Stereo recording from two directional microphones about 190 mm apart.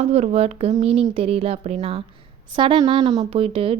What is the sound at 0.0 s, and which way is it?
A woman's voice, 35° right (ahead or behind).